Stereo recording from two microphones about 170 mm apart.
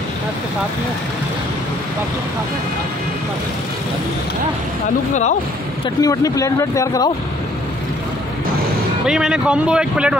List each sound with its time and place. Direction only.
5.9 s speech: 20° left (ahead or behind)
9.0 s speech: 5° right (ahead or behind)